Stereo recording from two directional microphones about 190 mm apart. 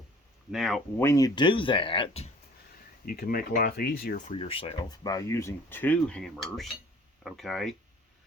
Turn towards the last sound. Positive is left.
turn(degrees=0)  # may be behind; listen again after turning